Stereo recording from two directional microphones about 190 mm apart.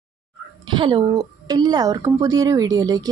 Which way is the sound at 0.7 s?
25° right (ahead or behind).